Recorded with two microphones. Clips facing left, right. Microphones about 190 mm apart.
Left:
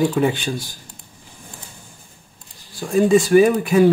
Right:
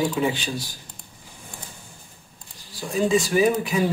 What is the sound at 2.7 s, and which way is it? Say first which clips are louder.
Speech: left 6 dB; 50° left (ahead or behind).